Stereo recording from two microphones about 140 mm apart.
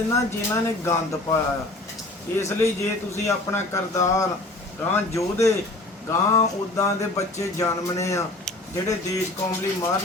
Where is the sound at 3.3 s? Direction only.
20° left (ahead or behind).